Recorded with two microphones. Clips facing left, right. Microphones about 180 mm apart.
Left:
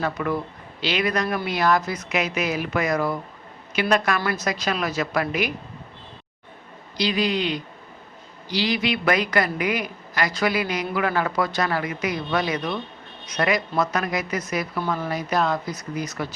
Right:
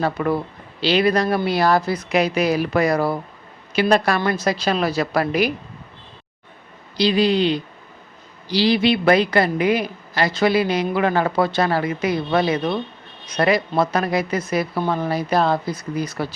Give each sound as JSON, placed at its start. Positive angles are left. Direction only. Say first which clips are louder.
{"t": 0.0, "sound": "speech", "louder": "right 4 dB", "side_deg": -30}
{"t": 6.9, "sound": "a woman's voice", "louder": "right 6 dB", "side_deg": -30}